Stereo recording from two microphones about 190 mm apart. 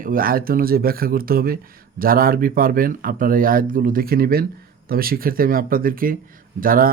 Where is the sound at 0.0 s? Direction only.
50° right (ahead or behind).